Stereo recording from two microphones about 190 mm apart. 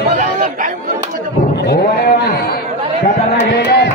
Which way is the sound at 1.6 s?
60° left (ahead or behind).